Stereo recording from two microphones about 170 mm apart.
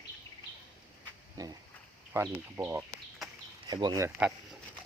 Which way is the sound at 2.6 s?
20° right (ahead or behind).